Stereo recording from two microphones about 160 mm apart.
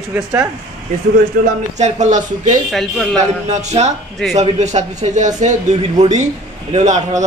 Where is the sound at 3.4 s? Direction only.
45° right (ahead or behind).